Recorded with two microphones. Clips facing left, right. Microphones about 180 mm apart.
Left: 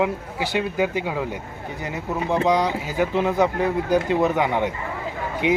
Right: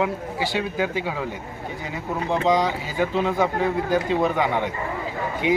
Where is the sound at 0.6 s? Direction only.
10° left (ahead or behind).